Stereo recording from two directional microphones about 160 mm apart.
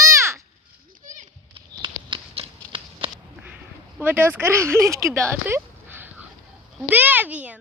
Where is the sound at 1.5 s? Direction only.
30° right (ahead or behind).